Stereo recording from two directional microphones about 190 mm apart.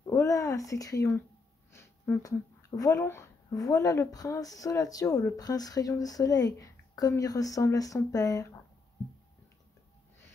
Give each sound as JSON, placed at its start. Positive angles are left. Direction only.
{"t": 0.0, "sound": "speech", "side_deg": 15}